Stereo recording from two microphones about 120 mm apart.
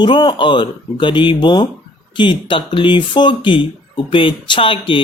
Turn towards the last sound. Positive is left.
turn(degrees=45)  # may be behind; listen again after turning